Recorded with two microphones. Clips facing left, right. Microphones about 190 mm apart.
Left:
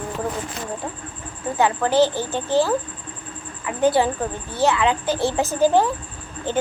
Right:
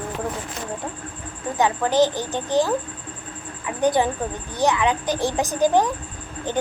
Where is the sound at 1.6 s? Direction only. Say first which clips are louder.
Left 1 dB; 15° right (ahead or behind).